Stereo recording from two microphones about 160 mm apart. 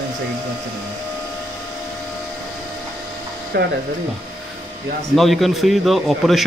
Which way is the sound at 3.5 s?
75° right (ahead or behind).